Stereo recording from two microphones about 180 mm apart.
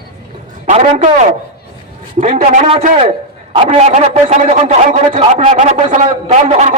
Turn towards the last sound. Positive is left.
turn(degrees=-40)  # may be behind; listen again after turning